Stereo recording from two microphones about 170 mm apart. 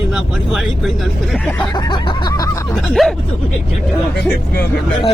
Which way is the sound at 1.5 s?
25° left (ahead or behind).